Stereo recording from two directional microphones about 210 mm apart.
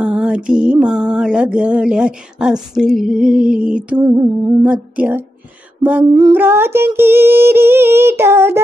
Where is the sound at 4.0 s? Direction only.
20° right (ahead or behind).